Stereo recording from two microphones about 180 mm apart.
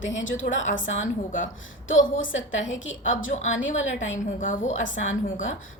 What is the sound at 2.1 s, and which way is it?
A woman's voice, 90° left.